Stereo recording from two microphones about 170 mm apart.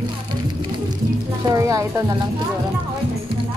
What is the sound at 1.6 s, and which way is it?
Speech, 20° right (ahead or behind).